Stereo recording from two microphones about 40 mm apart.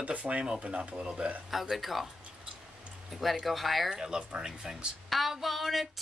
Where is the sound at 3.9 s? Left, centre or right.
Centre.